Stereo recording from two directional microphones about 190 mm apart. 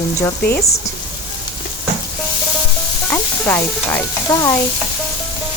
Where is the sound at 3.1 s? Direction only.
10° left (ahead or behind).